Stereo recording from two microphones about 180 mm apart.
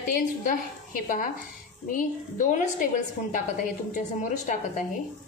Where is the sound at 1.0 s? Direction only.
50° left (ahead or behind).